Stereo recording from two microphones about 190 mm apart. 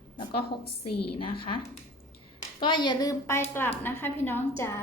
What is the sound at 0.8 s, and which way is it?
Speech, 25° left (ahead or behind).